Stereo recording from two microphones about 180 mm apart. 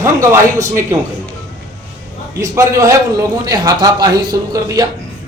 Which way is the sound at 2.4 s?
15° right (ahead or behind).